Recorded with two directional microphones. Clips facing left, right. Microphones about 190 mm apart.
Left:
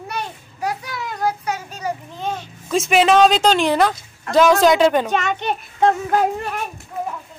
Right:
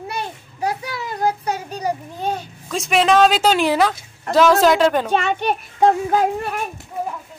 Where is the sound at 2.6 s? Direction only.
Centre (ahead or behind).